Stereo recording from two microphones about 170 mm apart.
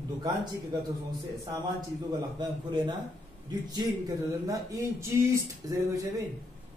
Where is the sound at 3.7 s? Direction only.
20° right (ahead or behind).